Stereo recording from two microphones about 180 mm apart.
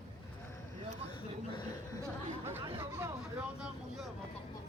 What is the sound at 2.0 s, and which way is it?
Chatter, 15° right (ahead or behind).